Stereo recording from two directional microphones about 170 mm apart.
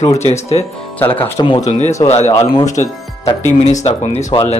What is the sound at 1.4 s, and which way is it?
Speech, 25° left (ahead or behind).